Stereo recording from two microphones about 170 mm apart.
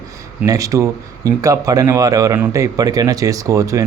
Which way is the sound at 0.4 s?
20° right (ahead or behind).